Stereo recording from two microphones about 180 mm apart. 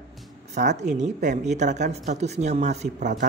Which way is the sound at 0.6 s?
40° right (ahead or behind).